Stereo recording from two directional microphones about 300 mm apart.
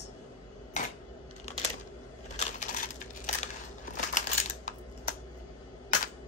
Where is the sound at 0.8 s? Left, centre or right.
Left.